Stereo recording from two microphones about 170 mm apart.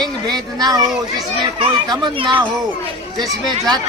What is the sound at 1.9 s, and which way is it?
Speech, 30° right (ahead or behind).